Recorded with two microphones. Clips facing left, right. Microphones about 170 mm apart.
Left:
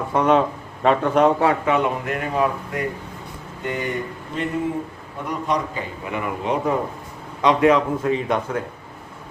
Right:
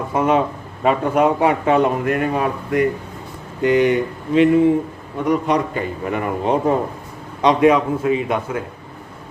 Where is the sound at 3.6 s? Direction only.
90° right.